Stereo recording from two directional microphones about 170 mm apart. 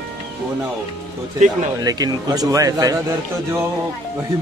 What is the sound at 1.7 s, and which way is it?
Speech, 20° right (ahead or behind).